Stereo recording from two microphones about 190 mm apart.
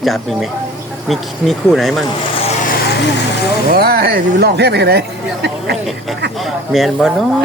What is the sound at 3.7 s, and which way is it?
Speech, 55° right (ahead or behind).